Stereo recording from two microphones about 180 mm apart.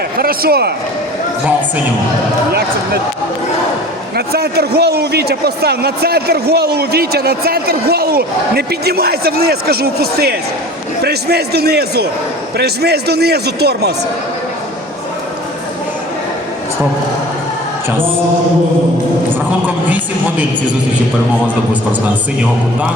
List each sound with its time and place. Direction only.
0.2 s a man's voice: 55° right (ahead or behind)
2.5 s a man's voice: 65° right (ahead or behind)
4.3 s a man's voice: 60° right (ahead or behind)